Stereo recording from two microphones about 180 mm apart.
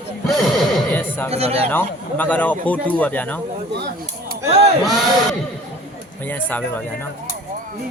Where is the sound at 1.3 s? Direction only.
35° right (ahead or behind).